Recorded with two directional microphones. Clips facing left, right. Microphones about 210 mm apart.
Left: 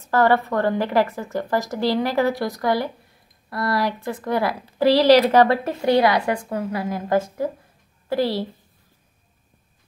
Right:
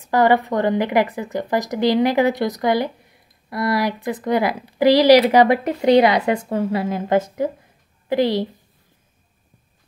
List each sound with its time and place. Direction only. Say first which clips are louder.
0.0 s speech: right 2 dB; 15° right (ahead or behind)